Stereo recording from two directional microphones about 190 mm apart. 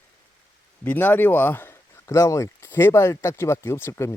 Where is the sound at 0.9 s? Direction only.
10° left (ahead or behind).